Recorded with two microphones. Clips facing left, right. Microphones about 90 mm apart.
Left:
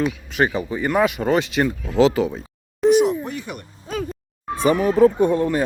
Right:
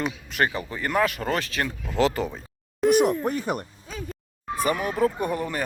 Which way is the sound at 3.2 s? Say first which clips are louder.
Right 4 dB; 40° right (ahead or behind).